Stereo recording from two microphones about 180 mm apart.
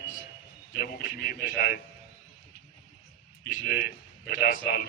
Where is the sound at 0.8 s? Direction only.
50° left (ahead or behind).